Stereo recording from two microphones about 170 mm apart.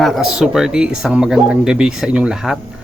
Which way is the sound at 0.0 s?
Centre (ahead or behind).